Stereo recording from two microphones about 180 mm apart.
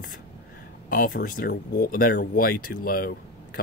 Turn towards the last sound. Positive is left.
turn(degrees=55)  # may be behind; listen again after turning